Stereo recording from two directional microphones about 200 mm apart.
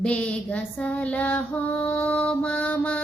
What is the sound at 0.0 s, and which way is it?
Female singing, 5° left (ahead or behind).